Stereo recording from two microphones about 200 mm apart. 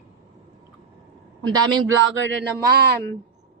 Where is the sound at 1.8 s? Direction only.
70° right (ahead or behind).